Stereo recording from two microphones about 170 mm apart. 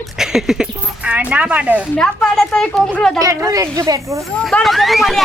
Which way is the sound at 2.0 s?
5° left (ahead or behind).